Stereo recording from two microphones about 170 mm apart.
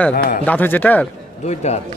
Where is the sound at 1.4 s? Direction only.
40° left (ahead or behind).